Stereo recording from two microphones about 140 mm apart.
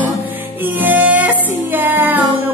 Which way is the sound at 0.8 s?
10° right (ahead or behind).